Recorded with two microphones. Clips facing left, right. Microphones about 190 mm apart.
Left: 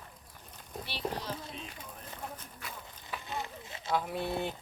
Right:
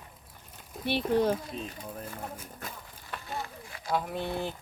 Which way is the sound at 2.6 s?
45° right (ahead or behind).